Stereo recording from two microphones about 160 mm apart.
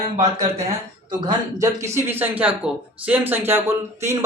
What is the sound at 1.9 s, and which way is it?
Speech, 15° right (ahead or behind).